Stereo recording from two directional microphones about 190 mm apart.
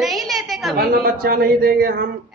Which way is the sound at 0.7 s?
50° right (ahead or behind).